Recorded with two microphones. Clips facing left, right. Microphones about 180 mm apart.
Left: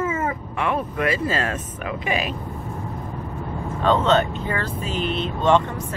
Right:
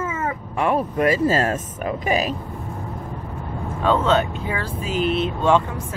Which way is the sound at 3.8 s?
5° right (ahead or behind).